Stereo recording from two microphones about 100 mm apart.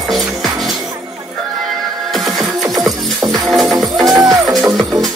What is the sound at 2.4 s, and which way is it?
Music, 35° right (ahead or behind).